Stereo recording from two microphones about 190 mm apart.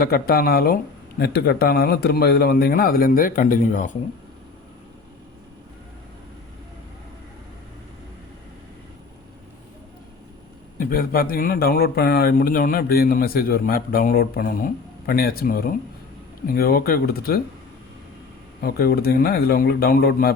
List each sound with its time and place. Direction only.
0.0 s a man's voice: 55° left (ahead or behind)
10.8 s speech: 50° left (ahead or behind)
18.6 s speech: 55° left (ahead or behind)